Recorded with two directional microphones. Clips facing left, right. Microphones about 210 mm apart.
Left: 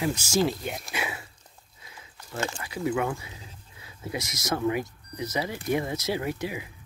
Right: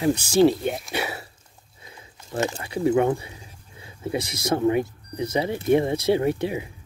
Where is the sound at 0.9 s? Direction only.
35° right (ahead or behind).